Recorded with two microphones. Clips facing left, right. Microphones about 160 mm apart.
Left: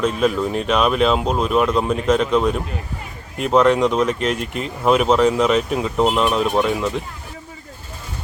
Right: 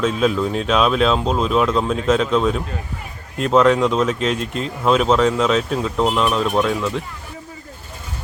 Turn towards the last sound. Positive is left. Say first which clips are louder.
# even
turn(degrees=5)  # may be behind; listen again after turning